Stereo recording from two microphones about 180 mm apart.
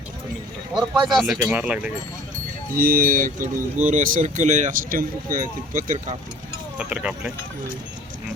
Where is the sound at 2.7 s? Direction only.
55° right (ahead or behind).